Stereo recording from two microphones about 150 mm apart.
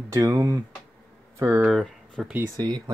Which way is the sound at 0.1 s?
20° right (ahead or behind).